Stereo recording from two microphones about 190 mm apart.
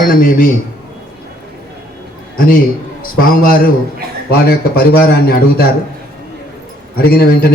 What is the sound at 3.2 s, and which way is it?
A man's voice, 50° left (ahead or behind).